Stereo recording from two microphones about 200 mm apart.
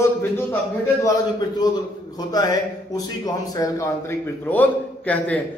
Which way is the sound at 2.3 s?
20° left (ahead or behind).